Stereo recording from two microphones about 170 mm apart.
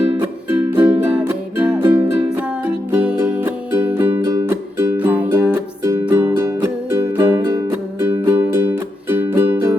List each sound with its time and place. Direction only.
0.7 s music: 10° right (ahead or behind)
5.4 s music: 20° right (ahead or behind)